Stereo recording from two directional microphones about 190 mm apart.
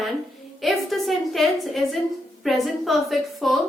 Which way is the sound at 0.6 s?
Centre (ahead or behind).